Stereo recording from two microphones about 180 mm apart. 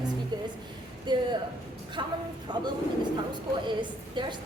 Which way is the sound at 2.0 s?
25° right (ahead or behind).